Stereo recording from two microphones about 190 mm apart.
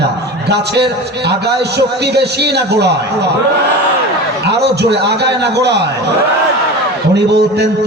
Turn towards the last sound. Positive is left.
turn(degrees=-60)  # may be behind; listen again after turning